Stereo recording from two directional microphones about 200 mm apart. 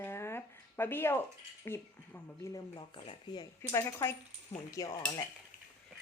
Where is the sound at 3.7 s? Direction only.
15° left (ahead or behind).